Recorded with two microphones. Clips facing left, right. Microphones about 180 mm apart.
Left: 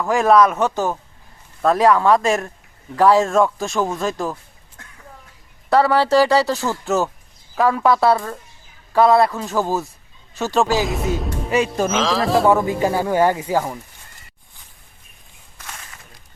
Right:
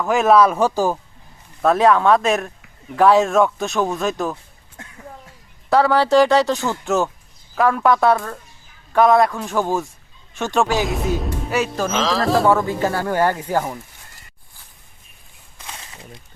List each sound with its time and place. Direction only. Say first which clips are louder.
0.0 s speech: even; centre (ahead or behind)
5.7 s speech: even; centre (ahead or behind)
12.5 s speech: left 1 dB; 15° left (ahead or behind)
15.6 s a sound: right 2 dB; 25° right (ahead or behind)